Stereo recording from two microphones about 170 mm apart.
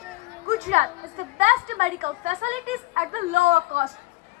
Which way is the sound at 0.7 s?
40° right (ahead or behind).